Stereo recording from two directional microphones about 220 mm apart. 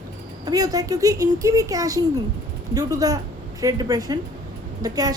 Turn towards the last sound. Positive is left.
turn(degrees=-15)  # may be behind; listen again after turning